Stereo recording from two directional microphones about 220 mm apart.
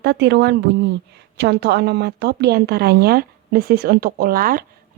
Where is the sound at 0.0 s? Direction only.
50° right (ahead or behind).